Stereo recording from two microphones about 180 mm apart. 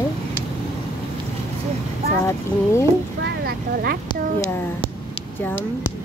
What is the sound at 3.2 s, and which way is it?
Speech, 60° right (ahead or behind).